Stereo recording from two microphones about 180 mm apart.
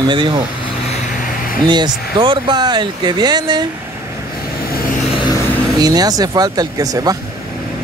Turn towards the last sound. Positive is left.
turn(degrees=-20)  # may be behind; listen again after turning